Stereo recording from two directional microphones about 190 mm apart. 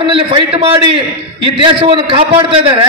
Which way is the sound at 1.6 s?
25° right (ahead or behind).